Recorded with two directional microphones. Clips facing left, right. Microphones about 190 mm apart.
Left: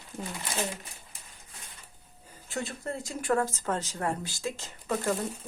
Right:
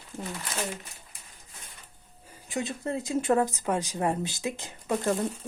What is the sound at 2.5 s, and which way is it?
Speech, 20° right (ahead or behind).